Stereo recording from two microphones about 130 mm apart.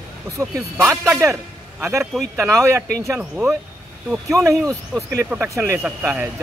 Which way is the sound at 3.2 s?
10° right (ahead or behind).